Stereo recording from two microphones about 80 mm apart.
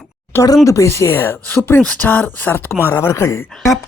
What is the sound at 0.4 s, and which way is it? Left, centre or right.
Speech, left.